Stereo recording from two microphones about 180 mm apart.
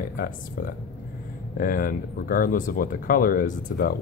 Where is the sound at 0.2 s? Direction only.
50° left (ahead or behind).